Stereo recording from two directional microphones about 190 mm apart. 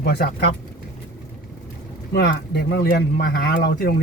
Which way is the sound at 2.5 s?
60° left (ahead or behind).